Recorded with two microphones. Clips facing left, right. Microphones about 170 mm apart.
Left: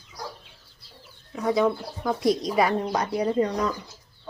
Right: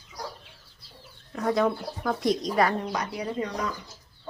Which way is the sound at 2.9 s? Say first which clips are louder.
Left 6 dB; 35° left (ahead or behind).